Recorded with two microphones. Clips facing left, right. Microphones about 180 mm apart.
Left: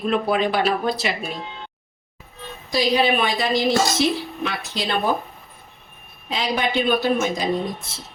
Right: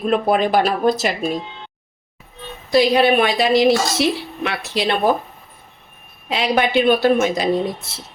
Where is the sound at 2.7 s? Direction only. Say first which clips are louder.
Right 5 dB; 60° right (ahead or behind).